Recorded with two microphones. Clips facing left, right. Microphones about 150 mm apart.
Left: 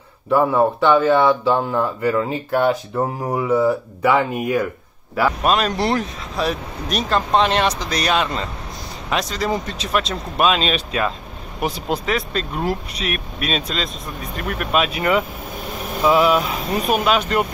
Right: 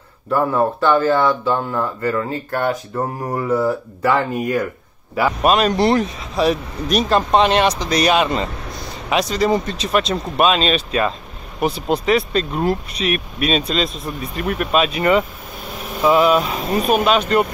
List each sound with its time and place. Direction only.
0.3 s speech: 5° left (ahead or behind)
1.5 s speech: 15° left (ahead or behind)
3.3 s speech: centre (ahead or behind)
5.1 s speech: 5° right (ahead or behind); by 12.0 s 10° left (ahead or behind)
12.1 s speech: 5° right (ahead or behind)